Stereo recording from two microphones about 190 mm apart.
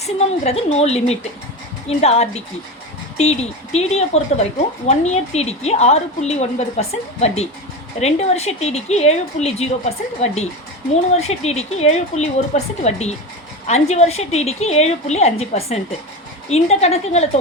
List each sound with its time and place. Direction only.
0.0 s a woman's voice: 35° left (ahead or behind)
11.1 s a woman's voice: 35° left (ahead or behind)